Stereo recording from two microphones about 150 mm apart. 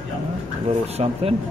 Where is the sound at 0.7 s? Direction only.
45° right (ahead or behind).